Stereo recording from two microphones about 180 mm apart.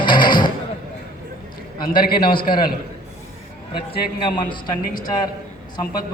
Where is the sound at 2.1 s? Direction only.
25° left (ahead or behind).